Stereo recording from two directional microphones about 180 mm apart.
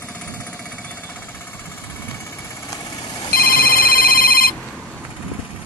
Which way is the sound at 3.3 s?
55° left (ahead or behind).